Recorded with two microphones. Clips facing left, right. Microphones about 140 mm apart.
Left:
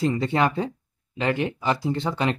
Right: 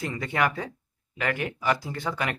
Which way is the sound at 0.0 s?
30° left (ahead or behind).